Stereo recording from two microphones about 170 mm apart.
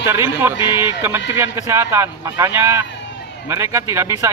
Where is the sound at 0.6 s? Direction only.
15° right (ahead or behind).